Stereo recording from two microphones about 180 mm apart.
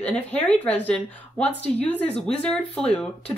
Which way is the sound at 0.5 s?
5° left (ahead or behind).